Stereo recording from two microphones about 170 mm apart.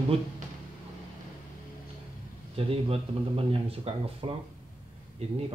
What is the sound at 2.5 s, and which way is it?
Speech, 35° right (ahead or behind).